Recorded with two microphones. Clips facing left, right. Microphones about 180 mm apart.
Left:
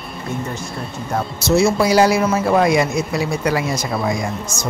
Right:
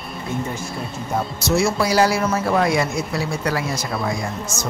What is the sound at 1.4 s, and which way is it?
A man's voice, 25° left (ahead or behind).